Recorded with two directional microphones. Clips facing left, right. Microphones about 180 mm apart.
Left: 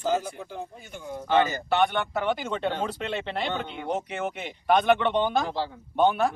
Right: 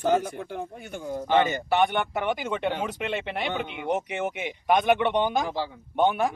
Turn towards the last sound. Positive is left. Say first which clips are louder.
# left 1 dB
turn(degrees=-15)  # may be behind; listen again after turning